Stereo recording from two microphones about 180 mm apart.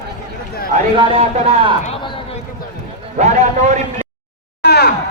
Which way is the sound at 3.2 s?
40° right (ahead or behind).